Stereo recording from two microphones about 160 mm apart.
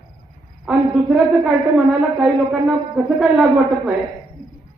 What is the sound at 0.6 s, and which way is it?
A woman's voice, 5° right (ahead or behind).